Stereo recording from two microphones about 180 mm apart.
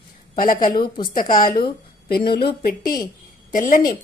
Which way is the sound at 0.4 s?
50° left (ahead or behind).